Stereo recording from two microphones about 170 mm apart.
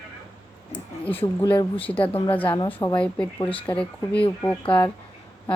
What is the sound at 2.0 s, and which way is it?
Speech, 30° left (ahead or behind).